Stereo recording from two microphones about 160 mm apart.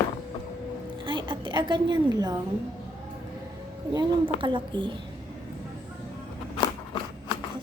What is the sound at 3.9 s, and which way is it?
A woman's voice, 30° right (ahead or behind).